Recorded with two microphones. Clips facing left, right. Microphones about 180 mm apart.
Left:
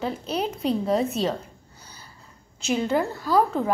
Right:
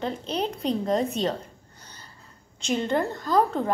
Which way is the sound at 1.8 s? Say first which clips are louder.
Left 1 dB; 10° left (ahead or behind).